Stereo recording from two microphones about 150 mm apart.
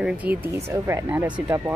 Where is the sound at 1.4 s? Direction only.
20° right (ahead or behind).